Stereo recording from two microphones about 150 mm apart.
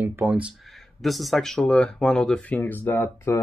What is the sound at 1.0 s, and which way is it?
Speech, centre (ahead or behind).